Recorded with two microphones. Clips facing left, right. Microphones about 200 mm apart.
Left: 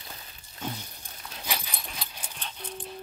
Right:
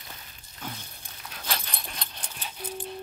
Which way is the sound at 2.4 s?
5° right (ahead or behind).